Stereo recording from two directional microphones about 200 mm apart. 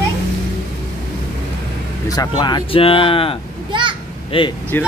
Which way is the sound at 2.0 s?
20° left (ahead or behind).